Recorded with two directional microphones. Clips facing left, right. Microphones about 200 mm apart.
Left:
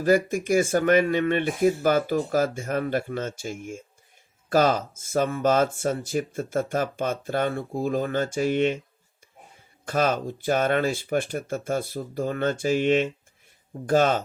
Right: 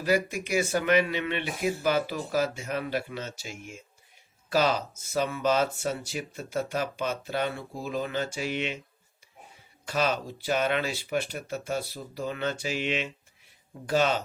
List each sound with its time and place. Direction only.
0.3 s speech: 50° left (ahead or behind)
9.8 s speech: 50° left (ahead or behind)